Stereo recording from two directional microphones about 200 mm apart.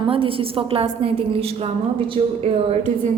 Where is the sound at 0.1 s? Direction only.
25° right (ahead or behind).